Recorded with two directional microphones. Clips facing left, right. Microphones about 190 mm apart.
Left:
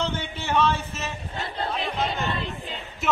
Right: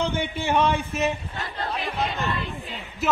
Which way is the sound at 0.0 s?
10° right (ahead or behind).